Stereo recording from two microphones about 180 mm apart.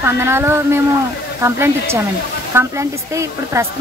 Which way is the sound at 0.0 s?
15° right (ahead or behind).